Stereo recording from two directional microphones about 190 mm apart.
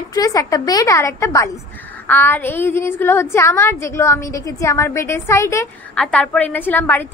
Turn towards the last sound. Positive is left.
turn(degrees=10)  # may be behind; listen again after turning